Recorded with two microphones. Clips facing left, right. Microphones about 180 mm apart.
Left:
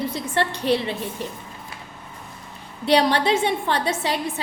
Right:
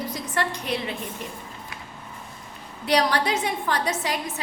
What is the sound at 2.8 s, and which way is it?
A woman's voice, 25° left (ahead or behind).